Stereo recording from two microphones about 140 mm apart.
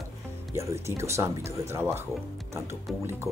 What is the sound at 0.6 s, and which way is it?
Speech, 20° right (ahead or behind).